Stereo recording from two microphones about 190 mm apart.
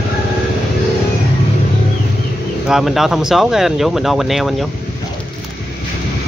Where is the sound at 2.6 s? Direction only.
Centre (ahead or behind).